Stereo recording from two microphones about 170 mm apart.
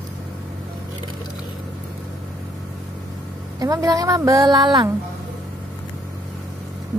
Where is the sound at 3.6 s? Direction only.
20° right (ahead or behind).